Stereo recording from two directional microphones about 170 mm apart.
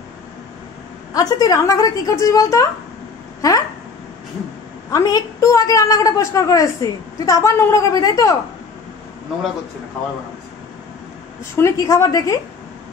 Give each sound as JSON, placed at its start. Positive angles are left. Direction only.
{"t": 1.1, "sound": "a woman's voice", "side_deg": 20}
{"t": 4.9, "sound": "a woman's voice", "side_deg": 20}
{"t": 11.5, "sound": "a woman's voice", "side_deg": 20}